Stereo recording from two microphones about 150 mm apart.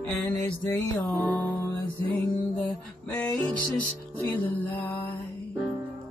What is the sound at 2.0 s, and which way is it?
Music, 30° left (ahead or behind).